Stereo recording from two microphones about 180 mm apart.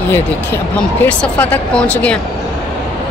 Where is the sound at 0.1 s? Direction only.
10° left (ahead or behind).